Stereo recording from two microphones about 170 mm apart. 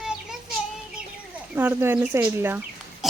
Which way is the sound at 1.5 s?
15° right (ahead or behind).